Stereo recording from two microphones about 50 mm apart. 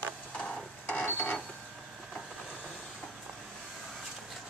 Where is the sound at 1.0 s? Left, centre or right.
Left.